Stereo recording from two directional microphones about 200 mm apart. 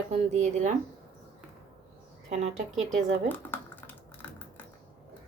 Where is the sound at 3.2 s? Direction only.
10° left (ahead or behind).